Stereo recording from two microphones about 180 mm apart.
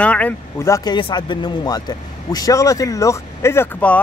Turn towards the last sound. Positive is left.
turn(degrees=10)  # may be behind; listen again after turning